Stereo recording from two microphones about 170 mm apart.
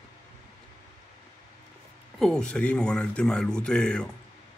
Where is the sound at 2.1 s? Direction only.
5° left (ahead or behind).